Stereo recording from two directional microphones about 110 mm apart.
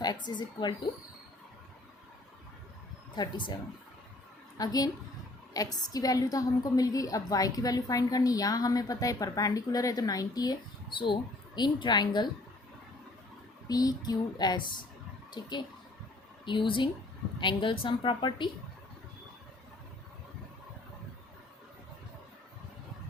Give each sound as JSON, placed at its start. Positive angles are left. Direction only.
{"t": 0.0, "sound": "a woman's voice", "side_deg": 40}
{"t": 3.2, "sound": "a woman's voice", "side_deg": 45}
{"t": 13.7, "sound": "a woman's voice", "side_deg": 35}
{"t": 16.5, "sound": "a woman's voice", "side_deg": 50}